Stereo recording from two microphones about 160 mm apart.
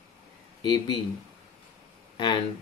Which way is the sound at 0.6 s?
25° left (ahead or behind).